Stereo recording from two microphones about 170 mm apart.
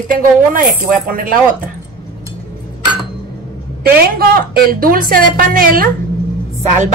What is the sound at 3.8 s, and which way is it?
A woman's voice, 60° right (ahead or behind).